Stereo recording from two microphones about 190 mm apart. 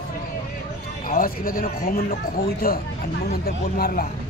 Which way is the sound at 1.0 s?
45° left (ahead or behind).